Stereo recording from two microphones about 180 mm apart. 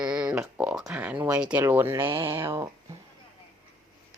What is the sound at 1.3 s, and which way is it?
Speech, 5° right (ahead or behind).